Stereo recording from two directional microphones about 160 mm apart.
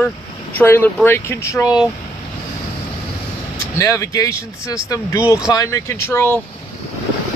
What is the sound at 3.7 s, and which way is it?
Speech, 20° left (ahead or behind).